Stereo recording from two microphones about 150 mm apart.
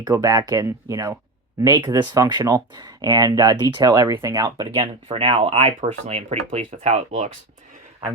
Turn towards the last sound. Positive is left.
turn(degrees=-50)  # may be behind; listen again after turning